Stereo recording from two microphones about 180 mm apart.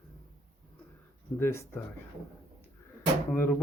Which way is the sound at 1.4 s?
15° left (ahead or behind).